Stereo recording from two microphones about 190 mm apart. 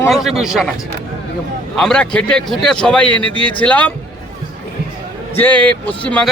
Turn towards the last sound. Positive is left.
turn(degrees=5)  # may be behind; listen again after turning